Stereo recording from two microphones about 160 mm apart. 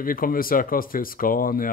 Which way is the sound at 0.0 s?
65° left (ahead or behind).